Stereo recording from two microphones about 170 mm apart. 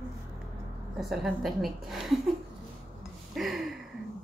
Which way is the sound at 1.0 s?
Centre (ahead or behind).